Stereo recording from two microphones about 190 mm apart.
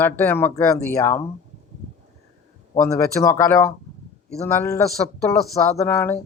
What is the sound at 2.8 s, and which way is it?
Speech, 15° left (ahead or behind).